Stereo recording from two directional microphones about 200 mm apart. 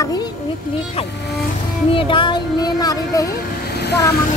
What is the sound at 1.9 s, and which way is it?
Speech, 25° left (ahead or behind).